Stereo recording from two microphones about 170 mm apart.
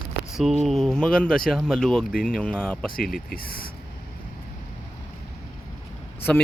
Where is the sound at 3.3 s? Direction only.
60° left (ahead or behind).